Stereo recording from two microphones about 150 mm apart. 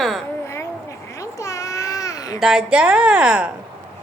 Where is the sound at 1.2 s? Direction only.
20° left (ahead or behind).